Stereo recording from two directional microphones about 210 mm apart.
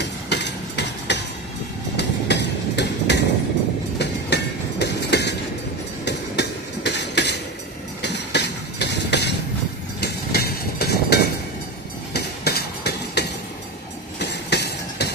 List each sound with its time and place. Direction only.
0.0 s hammer: 55° left (ahead or behind)
2.0 s train: 55° left (ahead or behind)
9.9 s vehicle: 50° left (ahead or behind)
12.1 s a sound: 50° left (ahead or behind)